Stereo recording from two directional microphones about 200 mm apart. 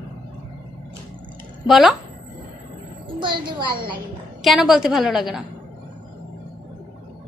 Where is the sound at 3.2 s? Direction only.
25° right (ahead or behind).